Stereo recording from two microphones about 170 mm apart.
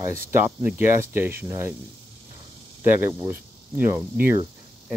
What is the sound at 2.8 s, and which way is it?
Speech, 10° right (ahead or behind).